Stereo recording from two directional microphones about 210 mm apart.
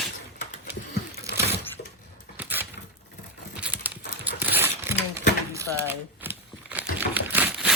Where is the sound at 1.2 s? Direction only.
10° right (ahead or behind).